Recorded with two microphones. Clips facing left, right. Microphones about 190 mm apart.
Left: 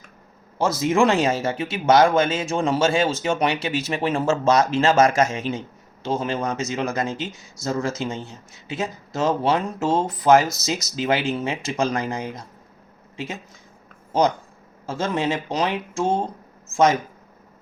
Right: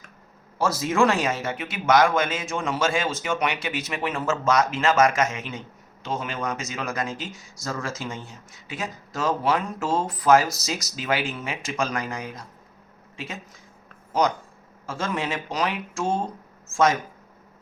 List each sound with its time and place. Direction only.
0.6 s speech: 20° left (ahead or behind)
14.1 s speech: 25° left (ahead or behind)